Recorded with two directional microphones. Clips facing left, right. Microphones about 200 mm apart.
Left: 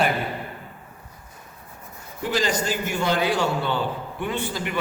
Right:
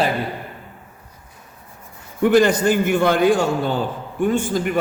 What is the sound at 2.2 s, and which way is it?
A man's voice, 60° right (ahead or behind).